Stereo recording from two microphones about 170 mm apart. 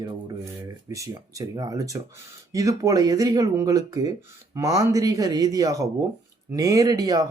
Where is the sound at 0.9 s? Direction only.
20° right (ahead or behind).